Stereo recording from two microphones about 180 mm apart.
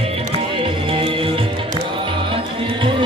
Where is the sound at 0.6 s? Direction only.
30° right (ahead or behind).